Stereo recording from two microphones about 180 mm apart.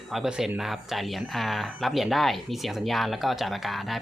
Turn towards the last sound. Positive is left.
turn(degrees=0)  # may be behind; listen again after turning